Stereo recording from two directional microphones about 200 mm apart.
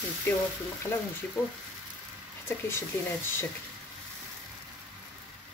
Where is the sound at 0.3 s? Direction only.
10° left (ahead or behind).